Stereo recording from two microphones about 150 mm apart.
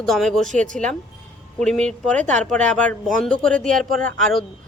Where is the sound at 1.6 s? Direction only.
5° left (ahead or behind).